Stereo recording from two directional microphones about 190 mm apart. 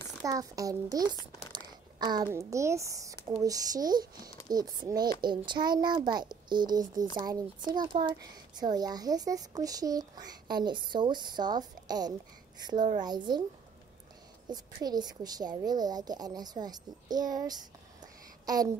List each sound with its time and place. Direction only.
0.2 s a woman's voice: 20° right (ahead or behind)
1.5 s a sound: 20° right (ahead or behind)
2.3 s a woman's voice: 15° right (ahead or behind)
14.5 s a woman's voice: 20° right (ahead or behind)